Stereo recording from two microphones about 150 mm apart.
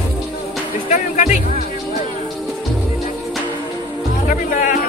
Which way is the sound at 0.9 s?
55° left (ahead or behind).